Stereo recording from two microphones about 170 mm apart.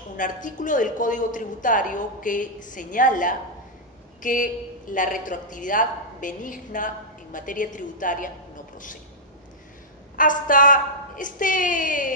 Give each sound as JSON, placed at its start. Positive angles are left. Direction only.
{"t": 0.2, "sound": "a woman's voice", "side_deg": 50}
{"t": 10.1, "sound": "a woman's voice", "side_deg": 50}